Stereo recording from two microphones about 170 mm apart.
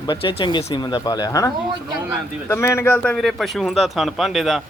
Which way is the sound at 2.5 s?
15° left (ahead or behind).